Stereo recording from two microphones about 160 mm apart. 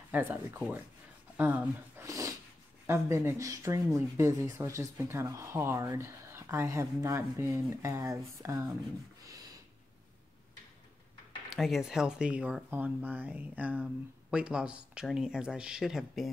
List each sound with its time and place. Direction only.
0.1 s speech: 10° right (ahead or behind)
9.2 s a sound: 20° right (ahead or behind)
11.5 s speech: centre (ahead or behind)